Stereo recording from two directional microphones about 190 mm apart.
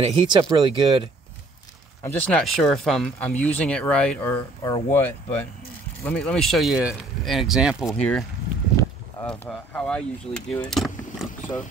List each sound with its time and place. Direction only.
0.0 s speech: 25° right (ahead or behind)
2.0 s speech: 5° left (ahead or behind)
6.0 s speech: 5° left (ahead or behind)